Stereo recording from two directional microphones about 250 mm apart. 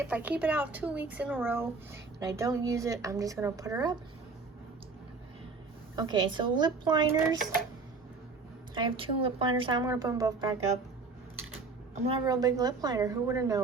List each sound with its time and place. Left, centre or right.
0.0 s speech: centre
6.0 s speech: centre
8.7 s speech: centre
12.0 s speech: centre